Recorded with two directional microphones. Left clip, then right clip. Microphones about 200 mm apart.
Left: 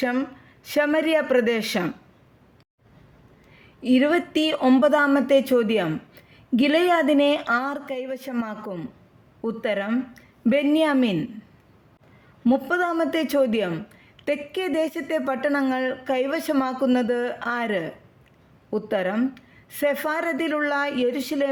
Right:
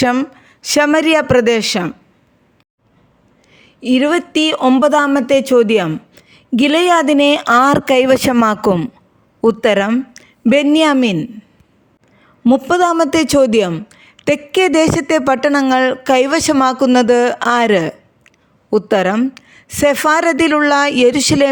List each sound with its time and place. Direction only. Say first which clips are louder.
0.0 s a woman's voice: right 10 dB; 35° right (ahead or behind)
3.5 s a woman's voice: right 6 dB; 30° right (ahead or behind)
12.5 s a woman's voice: right 10 dB; 35° right (ahead or behind)